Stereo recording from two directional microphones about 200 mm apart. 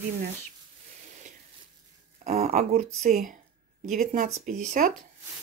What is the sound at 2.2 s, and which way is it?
Speech, 35° right (ahead or behind).